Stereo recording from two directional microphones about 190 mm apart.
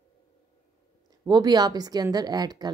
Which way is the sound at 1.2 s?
20° right (ahead or behind).